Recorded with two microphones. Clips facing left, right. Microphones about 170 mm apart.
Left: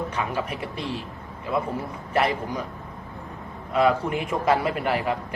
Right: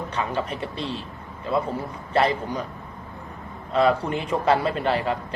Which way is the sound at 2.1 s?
10° left (ahead or behind).